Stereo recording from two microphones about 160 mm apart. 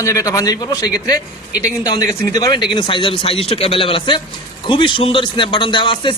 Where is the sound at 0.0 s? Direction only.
20° left (ahead or behind).